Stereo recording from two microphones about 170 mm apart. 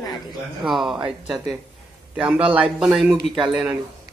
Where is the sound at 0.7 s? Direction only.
Centre (ahead or behind).